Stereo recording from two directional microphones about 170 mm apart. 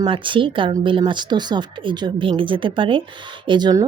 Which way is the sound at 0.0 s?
30° right (ahead or behind).